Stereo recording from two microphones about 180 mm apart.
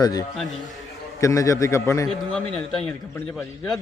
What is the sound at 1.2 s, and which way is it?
Speech, 20° left (ahead or behind).